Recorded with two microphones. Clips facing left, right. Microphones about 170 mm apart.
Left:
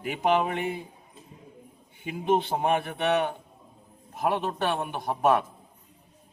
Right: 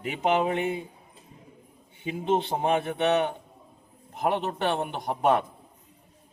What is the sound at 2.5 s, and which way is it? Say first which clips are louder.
Speech: right 1 dB; 25° right (ahead or behind).